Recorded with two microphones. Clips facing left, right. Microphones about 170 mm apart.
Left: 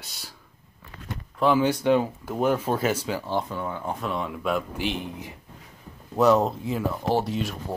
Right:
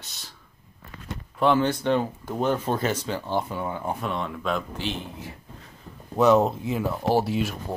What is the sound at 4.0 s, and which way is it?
Speech, 5° left (ahead or behind).